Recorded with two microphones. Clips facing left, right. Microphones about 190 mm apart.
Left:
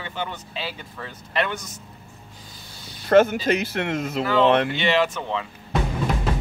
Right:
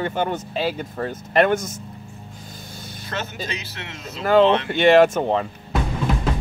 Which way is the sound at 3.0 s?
55° left (ahead or behind).